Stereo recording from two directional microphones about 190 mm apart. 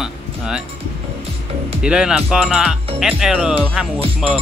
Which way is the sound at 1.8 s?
5° right (ahead or behind).